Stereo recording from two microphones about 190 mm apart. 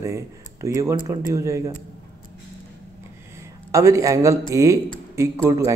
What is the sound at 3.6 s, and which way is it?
Speech, 15° right (ahead or behind).